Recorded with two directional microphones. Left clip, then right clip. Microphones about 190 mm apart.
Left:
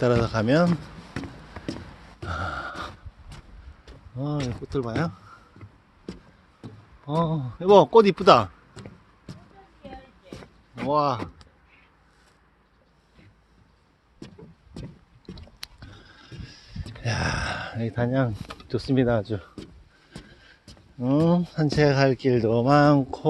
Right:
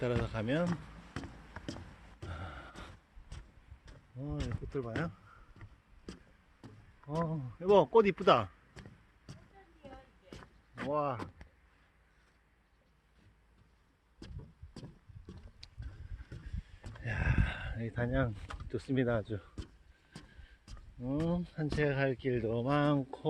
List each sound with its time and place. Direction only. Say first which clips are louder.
0.0 s speech: left 13 dB; 25° left (ahead or behind)
1.1 s a sound: left 9 dB; 10° right (ahead or behind)
2.3 s gasp: left 18 dB; 30° left (ahead or behind)
4.2 s speech: left 12 dB; 30° left (ahead or behind)
7.3 s speech: left 10 dB; 20° left (ahead or behind)
10.9 s speech: left 12 dB; 20° left (ahead or behind)
17.0 s speech: left 10 dB; 25° left (ahead or behind)
21.0 s speech: left 14 dB; 30° left (ahead or behind)